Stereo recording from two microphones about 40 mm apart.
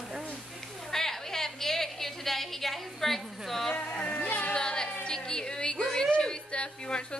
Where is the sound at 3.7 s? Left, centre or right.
Left.